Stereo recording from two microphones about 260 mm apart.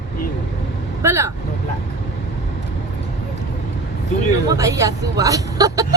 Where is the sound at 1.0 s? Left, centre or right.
Centre.